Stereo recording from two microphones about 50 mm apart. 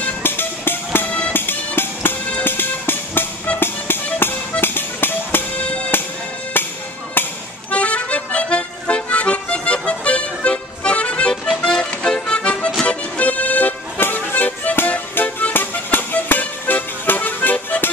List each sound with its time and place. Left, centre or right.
0.2 s music: left
1.0 s music: left
1.3 s music: left
7.7 s accordion: left
11.6 s music: centre; by 17.9 s left